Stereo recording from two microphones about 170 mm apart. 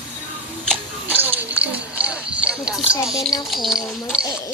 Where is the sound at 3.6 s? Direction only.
5° right (ahead or behind).